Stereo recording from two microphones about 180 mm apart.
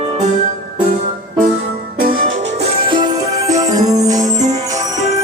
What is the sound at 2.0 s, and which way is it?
Music, 55° right (ahead or behind).